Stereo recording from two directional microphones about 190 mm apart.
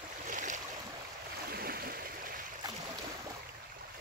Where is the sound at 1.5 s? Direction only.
50° right (ahead or behind).